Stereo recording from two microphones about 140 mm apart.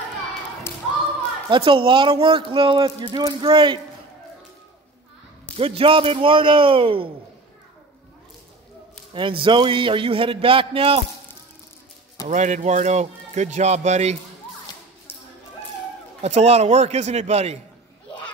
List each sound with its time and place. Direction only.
1.5 s speech: 40° right (ahead or behind)
5.6 s speech: 40° right (ahead or behind)
9.1 s speech: 35° right (ahead or behind)
12.3 s speech: 60° right (ahead or behind)
16.2 s a man's voice: 50° right (ahead or behind)